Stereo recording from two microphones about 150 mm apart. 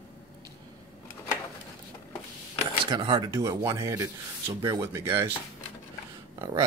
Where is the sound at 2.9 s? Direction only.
35° right (ahead or behind); by 5.3 s 15° right (ahead or behind).